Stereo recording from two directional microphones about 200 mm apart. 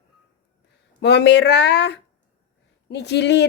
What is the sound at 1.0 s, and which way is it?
Speech, 60° left (ahead or behind).